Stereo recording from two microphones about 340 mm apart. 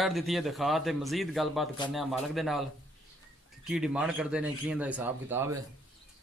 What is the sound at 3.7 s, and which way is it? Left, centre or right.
A man's voice, centre.